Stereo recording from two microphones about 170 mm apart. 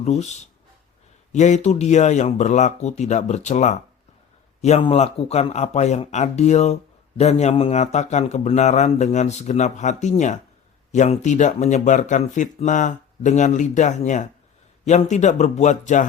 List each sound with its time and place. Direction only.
0.0 s speech: 40° left (ahead or behind)